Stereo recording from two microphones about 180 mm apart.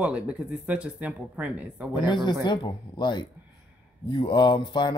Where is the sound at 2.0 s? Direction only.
25° left (ahead or behind).